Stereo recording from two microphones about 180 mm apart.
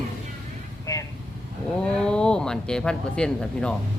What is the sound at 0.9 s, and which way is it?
Vehicle, 20° left (ahead or behind).